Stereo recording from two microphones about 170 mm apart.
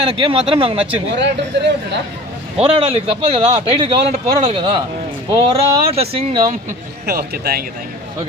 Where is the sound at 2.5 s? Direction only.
35° right (ahead or behind).